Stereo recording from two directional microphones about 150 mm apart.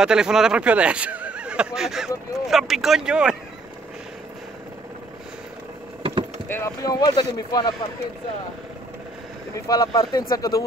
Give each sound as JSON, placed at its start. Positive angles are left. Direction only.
{"t": 0.0, "sound": "speech", "side_deg": -5}
{"t": 6.5, "sound": "speech", "side_deg": 20}
{"t": 9.7, "sound": "speech", "side_deg": 25}